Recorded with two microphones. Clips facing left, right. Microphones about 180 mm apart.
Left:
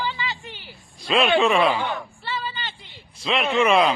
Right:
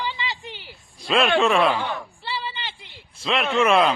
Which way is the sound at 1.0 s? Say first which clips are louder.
Even; centre (ahead or behind).